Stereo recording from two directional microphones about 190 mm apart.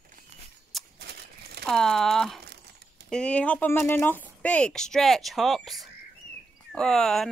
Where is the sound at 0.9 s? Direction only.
60° right (ahead or behind).